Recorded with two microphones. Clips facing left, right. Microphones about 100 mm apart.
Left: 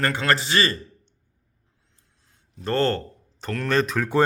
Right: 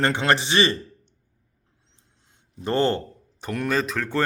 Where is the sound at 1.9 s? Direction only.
25° right (ahead or behind).